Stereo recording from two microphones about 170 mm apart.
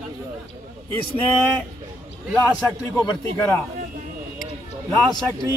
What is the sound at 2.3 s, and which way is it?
Speech, 10° left (ahead or behind).